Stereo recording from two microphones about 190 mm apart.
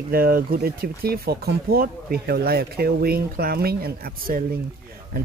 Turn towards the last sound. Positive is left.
turn(degrees=-50)  # may be behind; listen again after turning